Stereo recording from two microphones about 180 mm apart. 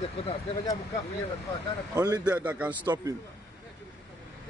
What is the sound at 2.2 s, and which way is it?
Speech, 10° right (ahead or behind).